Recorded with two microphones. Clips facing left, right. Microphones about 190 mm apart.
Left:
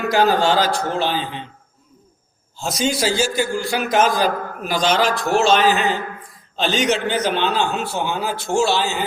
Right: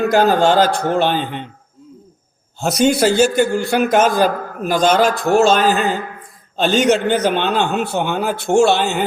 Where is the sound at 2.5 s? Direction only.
60° right (ahead or behind).